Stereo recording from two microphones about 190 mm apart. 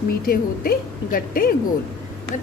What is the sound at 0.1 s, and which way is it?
A woman's voice, 55° left (ahead or behind).